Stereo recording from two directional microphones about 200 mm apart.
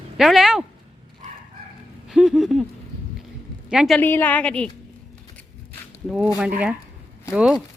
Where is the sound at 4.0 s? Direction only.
10° left (ahead or behind).